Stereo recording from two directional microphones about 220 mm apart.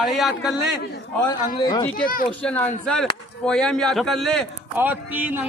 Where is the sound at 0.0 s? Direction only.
Centre (ahead or behind).